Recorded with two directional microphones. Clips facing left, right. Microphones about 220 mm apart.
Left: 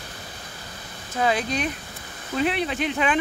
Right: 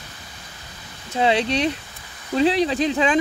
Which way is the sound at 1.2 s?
25° right (ahead or behind).